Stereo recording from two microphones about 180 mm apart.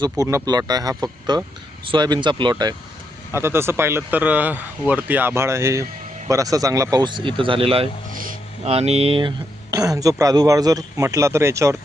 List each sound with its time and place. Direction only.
0.0 s speech: 20° right (ahead or behind)
3.3 s speech: 15° right (ahead or behind); by 9.3 s 30° right (ahead or behind)
9.7 s speech: 20° right (ahead or behind)